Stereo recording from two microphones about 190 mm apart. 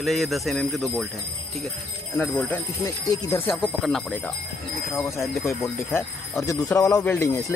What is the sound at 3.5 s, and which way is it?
Speech, centre (ahead or behind).